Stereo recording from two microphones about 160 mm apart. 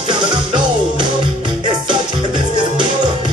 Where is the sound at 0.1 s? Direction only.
30° right (ahead or behind).